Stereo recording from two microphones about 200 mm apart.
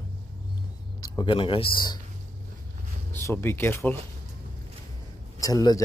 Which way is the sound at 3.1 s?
10° left (ahead or behind).